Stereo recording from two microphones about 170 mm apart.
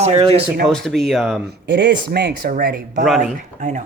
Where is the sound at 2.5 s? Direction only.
60° right (ahead or behind).